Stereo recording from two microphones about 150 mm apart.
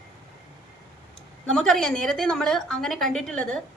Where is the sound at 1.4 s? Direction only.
5° left (ahead or behind).